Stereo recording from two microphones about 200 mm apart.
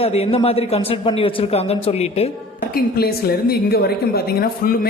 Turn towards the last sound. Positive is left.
turn(degrees=50)  # may be behind; listen again after turning